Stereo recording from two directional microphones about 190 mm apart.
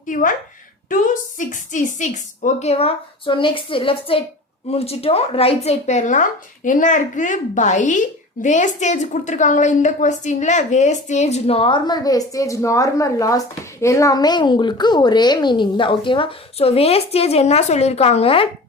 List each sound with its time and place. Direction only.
0.1 s a woman's voice: 45° left (ahead or behind)